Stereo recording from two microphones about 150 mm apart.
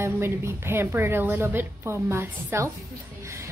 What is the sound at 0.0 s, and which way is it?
A woman's voice, 15° right (ahead or behind).